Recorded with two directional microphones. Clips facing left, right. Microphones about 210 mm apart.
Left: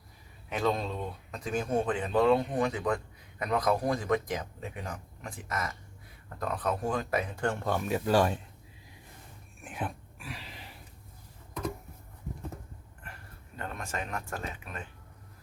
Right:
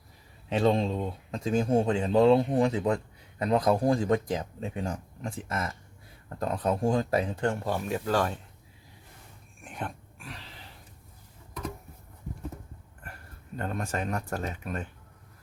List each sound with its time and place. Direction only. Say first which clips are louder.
0.5 s speech: right 5 dB; 30° right (ahead or behind)
7.6 s speech: even; centre (ahead or behind)
8.0 s speech: left 2 dB; 15° left (ahead or behind)
9.6 s a sound: left 1 dB; 5° left (ahead or behind)
13.6 s speech: right 5 dB; 40° right (ahead or behind)